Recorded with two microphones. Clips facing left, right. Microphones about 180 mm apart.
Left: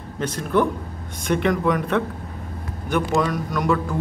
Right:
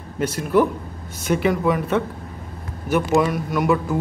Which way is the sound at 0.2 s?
10° right (ahead or behind).